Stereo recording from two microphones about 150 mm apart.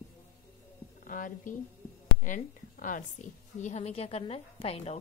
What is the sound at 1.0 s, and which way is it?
A woman's voice, 65° left (ahead or behind).